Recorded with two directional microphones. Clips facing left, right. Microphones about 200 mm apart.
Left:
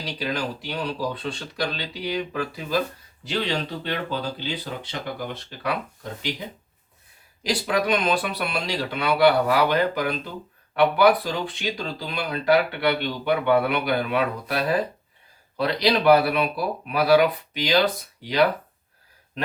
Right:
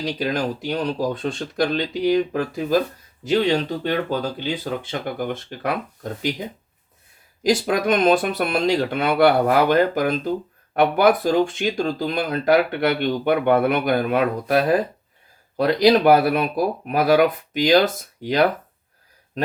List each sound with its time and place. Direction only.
0.0 s speech: 45° right (ahead or behind)
7.4 s speech: 45° right (ahead or behind)